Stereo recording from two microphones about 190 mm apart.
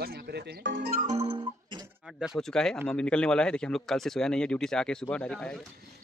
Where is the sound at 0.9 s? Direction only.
40° right (ahead or behind).